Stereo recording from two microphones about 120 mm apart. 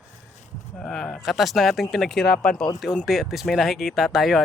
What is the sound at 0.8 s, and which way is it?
Speech, 5° left (ahead or behind).